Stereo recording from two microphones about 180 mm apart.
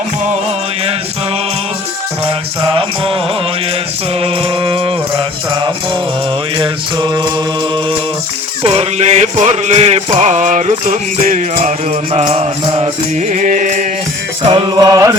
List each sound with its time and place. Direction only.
2.6 s music: 30° right (ahead or behind)
4.2 s music: 30° right (ahead or behind)
8.6 s music: 35° right (ahead or behind)
14.5 s music: 25° right (ahead or behind)